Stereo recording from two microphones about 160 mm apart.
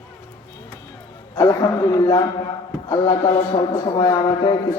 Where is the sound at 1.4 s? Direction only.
25° left (ahead or behind).